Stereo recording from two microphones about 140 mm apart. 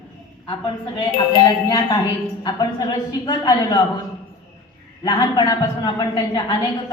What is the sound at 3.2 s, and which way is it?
Speech, 30° left (ahead or behind).